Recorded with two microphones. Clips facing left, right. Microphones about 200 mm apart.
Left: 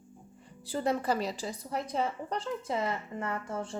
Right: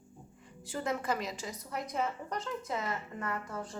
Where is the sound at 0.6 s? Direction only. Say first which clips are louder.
Left 5 dB; 35° left (ahead or behind).